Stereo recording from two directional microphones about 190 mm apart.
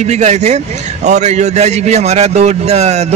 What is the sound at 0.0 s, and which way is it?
A man's voice, 35° right (ahead or behind).